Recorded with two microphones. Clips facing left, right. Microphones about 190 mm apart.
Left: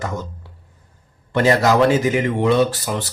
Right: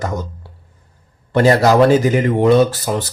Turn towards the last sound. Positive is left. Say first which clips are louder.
# right 4 dB
turn(degrees=-40)  # may be behind; listen again after turning